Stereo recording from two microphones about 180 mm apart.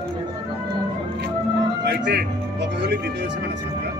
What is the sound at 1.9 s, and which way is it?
Speech, 65° right (ahead or behind).